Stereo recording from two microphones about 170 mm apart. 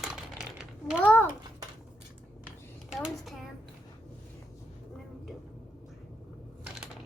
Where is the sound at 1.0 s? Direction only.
10° left (ahead or behind).